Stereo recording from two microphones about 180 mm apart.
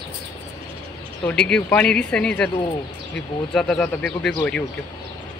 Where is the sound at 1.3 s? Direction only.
5° left (ahead or behind).